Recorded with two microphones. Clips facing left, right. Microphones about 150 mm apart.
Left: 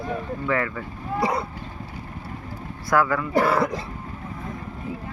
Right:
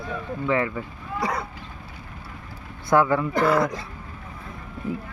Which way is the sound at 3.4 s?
30° left (ahead or behind).